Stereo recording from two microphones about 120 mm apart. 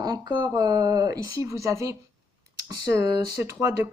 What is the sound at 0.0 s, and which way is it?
Speech, 35° right (ahead or behind).